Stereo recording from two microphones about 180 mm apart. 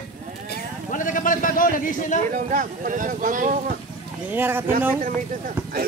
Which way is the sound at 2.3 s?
45° right (ahead or behind).